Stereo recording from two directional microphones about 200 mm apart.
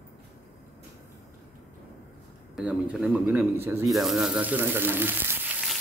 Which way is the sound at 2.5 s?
5° right (ahead or behind).